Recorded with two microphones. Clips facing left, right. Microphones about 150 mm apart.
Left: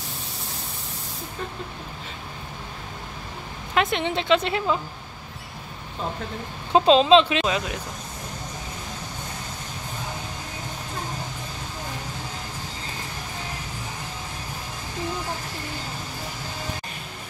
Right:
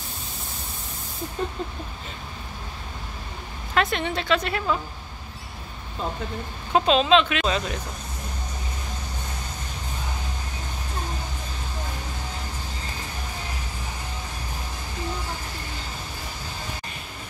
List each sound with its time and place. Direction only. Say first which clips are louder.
3.7 s a woman's voice: left 1 dB; 20° left (ahead or behind)
6.7 s a woman's voice: left 3 dB; 30° left (ahead or behind)
7.4 s speech: even; 10° left (ahead or behind)